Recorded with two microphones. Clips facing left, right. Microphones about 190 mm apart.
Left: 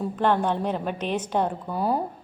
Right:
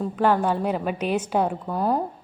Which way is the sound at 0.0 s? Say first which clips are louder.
Right 2 dB; 5° right (ahead or behind).